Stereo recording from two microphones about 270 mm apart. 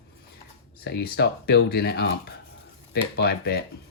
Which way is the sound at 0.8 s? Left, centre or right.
Left.